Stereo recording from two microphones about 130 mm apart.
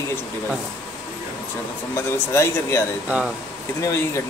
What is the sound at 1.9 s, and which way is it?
Speech, 20° left (ahead or behind).